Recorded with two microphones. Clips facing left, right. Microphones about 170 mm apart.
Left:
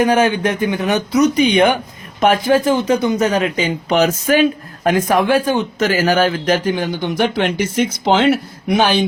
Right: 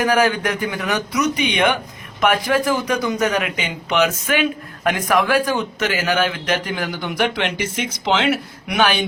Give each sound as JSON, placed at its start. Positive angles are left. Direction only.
{"t": 0.0, "sound": "speech", "side_deg": 25}
{"t": 8.6, "sound": "speech", "side_deg": 30}